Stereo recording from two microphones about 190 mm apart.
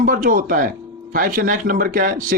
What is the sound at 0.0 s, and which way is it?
Speech, 45° right (ahead or behind).